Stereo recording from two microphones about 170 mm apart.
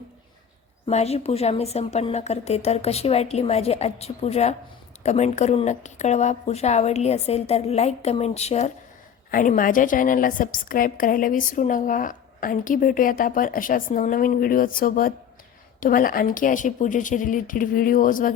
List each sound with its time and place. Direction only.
0.9 s a woman's voice: 40° left (ahead or behind)
9.3 s a woman's voice: 50° left (ahead or behind)